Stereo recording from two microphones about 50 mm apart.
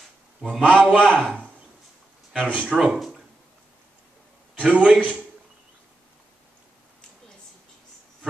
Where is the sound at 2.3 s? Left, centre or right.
Left.